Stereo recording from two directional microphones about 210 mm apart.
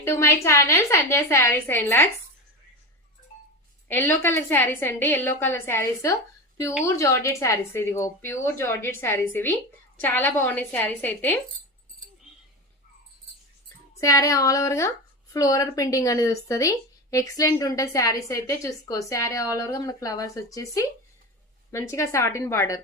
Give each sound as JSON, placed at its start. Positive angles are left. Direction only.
{"t": 0.0, "sound": "a woman's voice", "side_deg": 15}
{"t": 3.8, "sound": "a woman's voice", "side_deg": 10}
{"t": 14.0, "sound": "a woman's voice", "side_deg": 15}